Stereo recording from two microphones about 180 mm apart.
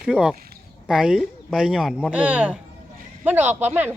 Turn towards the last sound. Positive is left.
turn(degrees=-10)  # may be behind; listen again after turning